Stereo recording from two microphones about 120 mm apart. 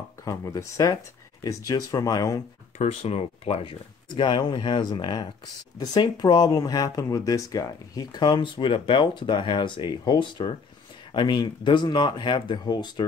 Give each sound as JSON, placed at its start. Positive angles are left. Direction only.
{"t": 0.2, "sound": "speech", "side_deg": 30}
{"t": 2.8, "sound": "speech", "side_deg": 65}
{"t": 4.2, "sound": "speech", "side_deg": 40}